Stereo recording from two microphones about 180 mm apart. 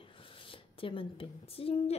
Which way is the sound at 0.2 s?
30° left (ahead or behind).